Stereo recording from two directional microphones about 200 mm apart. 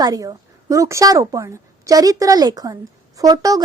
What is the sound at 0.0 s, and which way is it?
A woman's voice, 20° right (ahead or behind).